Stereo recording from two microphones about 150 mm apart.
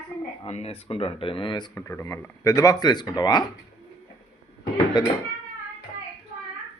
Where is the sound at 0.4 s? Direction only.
45° left (ahead or behind).